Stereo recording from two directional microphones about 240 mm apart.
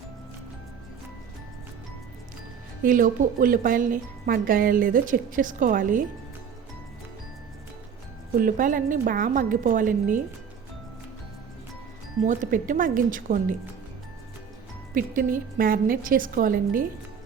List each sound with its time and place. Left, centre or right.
2.8 s speech: right
8.4 s speech: right
12.2 s speech: right
14.9 s speech: right